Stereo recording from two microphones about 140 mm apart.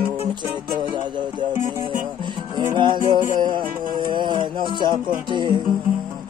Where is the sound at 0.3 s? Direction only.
35° right (ahead or behind).